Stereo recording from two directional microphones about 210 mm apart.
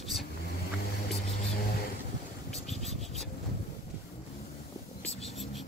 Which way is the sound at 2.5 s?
Centre (ahead or behind).